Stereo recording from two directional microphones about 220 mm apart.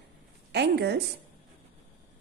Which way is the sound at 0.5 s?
50° right (ahead or behind).